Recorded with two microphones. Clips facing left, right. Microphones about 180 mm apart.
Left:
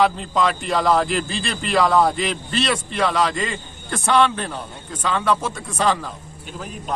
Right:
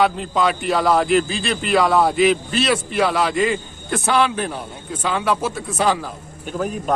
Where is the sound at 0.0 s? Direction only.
5° right (ahead or behind).